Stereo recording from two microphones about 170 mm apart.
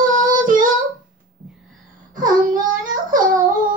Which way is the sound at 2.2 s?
50° right (ahead or behind).